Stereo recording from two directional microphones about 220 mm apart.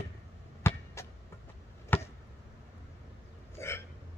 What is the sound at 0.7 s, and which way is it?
Chop, 10° left (ahead or behind).